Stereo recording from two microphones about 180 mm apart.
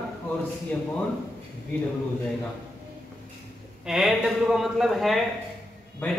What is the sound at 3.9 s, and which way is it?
Speech, centre (ahead or behind).